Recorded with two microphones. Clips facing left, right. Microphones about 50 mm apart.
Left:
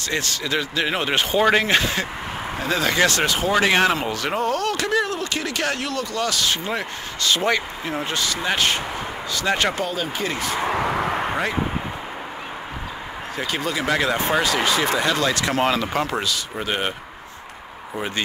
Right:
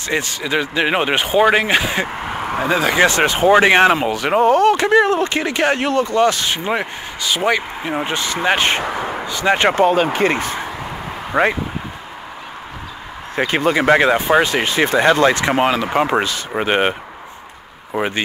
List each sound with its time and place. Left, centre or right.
0.1 s speech: centre
7.2 s speech: centre; by 11.5 s right
13.4 s speech: right
15.6 s speech: centre
16.1 s speech: right